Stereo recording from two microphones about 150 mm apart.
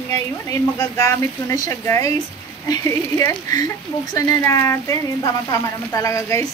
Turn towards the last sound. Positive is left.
turn(degrees=20)  # may be behind; listen again after turning